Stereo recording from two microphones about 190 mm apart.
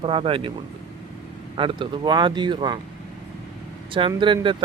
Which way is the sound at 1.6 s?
25° right (ahead or behind).